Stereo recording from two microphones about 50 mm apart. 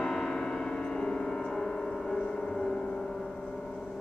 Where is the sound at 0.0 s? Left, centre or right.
Centre.